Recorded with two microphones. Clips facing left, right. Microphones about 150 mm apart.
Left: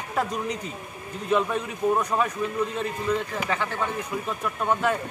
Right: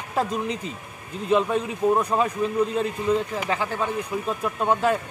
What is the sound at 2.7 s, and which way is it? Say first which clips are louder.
Speech: right 4 dB; 35° right (ahead or behind).